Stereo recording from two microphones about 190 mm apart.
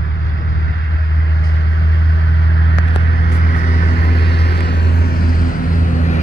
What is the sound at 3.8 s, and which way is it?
Vehicle, 50° left (ahead or behind).